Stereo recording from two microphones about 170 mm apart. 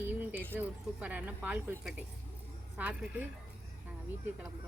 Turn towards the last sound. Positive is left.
turn(degrees=-10)  # may be behind; listen again after turning